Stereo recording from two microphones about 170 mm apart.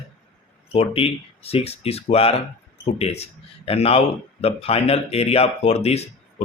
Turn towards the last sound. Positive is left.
turn(degrees=40)  # may be behind; listen again after turning